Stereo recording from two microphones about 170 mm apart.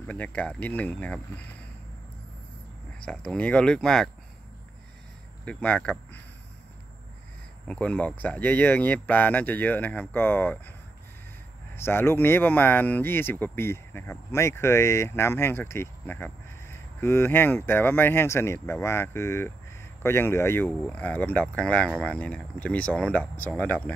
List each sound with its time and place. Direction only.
0.0 s speech: 10° left (ahead or behind)
3.1 s speech: 5° left (ahead or behind)
5.4 s speech: 10° left (ahead or behind)
7.6 s speech: 10° left (ahead or behind)
11.7 s speech: 15° left (ahead or behind)